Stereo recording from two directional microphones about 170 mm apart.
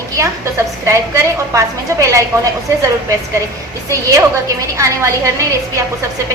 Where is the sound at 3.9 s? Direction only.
20° right (ahead or behind).